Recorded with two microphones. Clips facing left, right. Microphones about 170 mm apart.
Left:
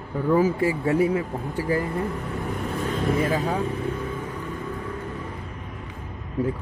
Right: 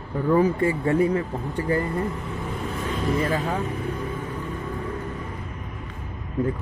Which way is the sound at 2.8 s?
50° left (ahead or behind).